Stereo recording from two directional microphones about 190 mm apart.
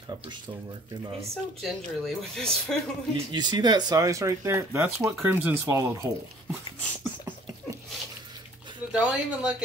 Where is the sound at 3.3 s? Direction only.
20° right (ahead or behind).